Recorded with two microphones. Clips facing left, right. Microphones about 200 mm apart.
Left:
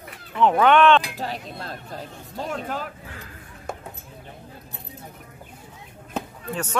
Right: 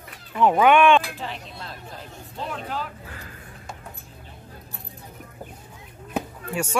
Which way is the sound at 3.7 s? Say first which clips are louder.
Left 7 dB; 55° left (ahead or behind).